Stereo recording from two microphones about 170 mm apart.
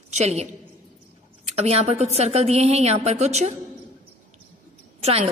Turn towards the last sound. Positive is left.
turn(degrees=-40)  # may be behind; listen again after turning